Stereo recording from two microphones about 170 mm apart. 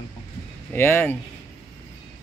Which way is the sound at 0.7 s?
10° left (ahead or behind).